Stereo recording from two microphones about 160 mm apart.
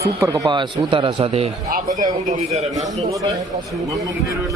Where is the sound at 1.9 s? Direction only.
50° right (ahead or behind).